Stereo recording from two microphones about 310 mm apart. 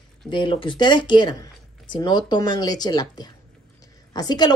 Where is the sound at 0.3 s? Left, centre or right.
Centre.